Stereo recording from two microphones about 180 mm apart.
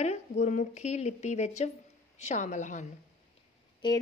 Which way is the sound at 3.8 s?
25° left (ahead or behind).